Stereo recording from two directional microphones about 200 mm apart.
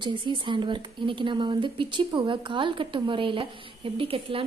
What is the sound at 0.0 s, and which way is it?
Speech, 25° right (ahead or behind).